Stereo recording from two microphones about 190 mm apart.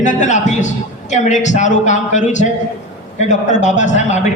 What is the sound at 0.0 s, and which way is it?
A man's voice, 40° left (ahead or behind).